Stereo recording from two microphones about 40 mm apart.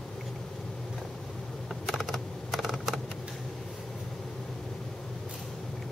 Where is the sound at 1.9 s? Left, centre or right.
Centre.